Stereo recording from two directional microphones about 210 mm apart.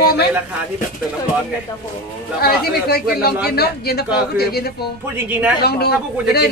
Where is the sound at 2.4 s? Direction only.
45° left (ahead or behind).